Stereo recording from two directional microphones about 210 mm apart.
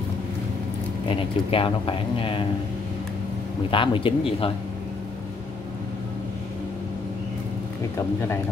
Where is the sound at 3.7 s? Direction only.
25° left (ahead or behind).